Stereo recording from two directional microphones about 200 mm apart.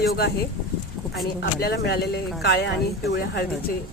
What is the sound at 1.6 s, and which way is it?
Speech, 55° left (ahead or behind).